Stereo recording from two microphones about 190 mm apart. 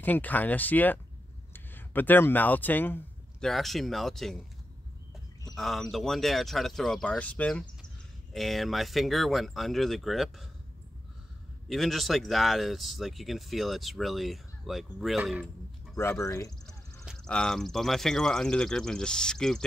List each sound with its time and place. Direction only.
0.0 s speech: 10° left (ahead or behind)
5.6 s speech: centre (ahead or behind)
11.7 s speech: centre (ahead or behind)
16.0 s speech: 15° left (ahead or behind)
16.6 s speech: centre (ahead or behind)